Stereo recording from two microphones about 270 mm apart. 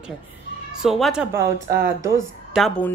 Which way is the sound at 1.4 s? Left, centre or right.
Right.